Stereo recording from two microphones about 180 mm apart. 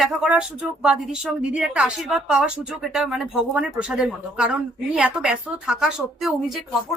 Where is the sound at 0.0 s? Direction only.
Centre (ahead or behind).